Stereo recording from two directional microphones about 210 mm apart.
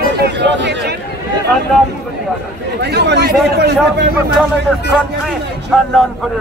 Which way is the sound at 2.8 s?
50° right (ahead or behind).